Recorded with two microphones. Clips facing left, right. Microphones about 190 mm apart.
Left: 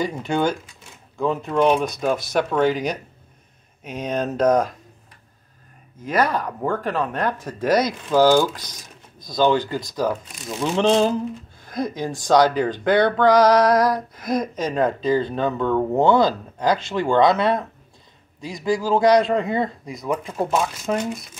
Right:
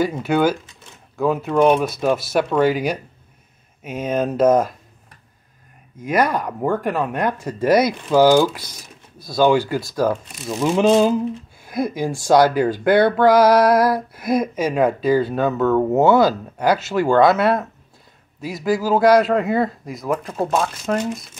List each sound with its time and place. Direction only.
0.0 s a man's voice: 5° right (ahead or behind)
5.9 s a man's voice: 10° right (ahead or behind); by 21.0 s 5° left (ahead or behind)